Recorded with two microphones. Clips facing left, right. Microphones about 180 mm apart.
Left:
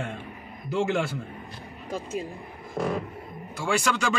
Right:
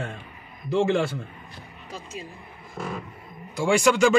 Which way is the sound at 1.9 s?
50° left (ahead or behind).